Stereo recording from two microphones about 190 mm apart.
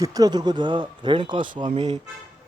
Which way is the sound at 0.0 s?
20° right (ahead or behind).